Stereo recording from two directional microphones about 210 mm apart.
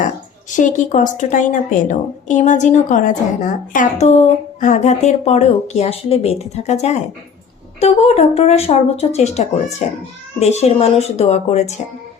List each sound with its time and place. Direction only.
0.5 s a woman's voice: 35° left (ahead or behind)